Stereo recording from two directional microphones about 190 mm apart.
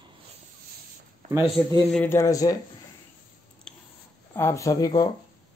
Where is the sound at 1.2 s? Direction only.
40° right (ahead or behind).